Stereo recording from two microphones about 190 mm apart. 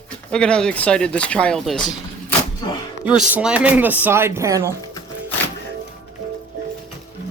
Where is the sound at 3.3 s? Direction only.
5° right (ahead or behind).